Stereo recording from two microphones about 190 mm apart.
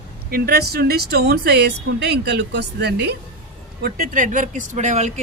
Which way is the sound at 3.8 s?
45° right (ahead or behind).